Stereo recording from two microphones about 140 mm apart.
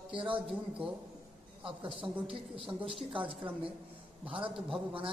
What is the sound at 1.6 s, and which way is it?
Speech, 40° right (ahead or behind).